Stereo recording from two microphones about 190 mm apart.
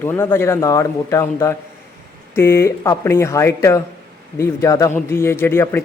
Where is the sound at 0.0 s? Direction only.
10° left (ahead or behind).